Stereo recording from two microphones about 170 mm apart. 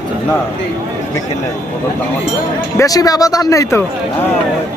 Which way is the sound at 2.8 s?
20° left (ahead or behind).